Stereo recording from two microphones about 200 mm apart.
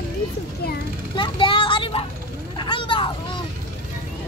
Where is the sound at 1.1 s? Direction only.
25° left (ahead or behind).